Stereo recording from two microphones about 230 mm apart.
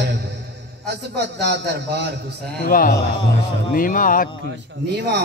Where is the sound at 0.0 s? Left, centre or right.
Right.